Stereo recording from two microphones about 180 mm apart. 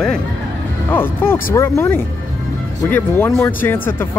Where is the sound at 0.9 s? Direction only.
10° left (ahead or behind).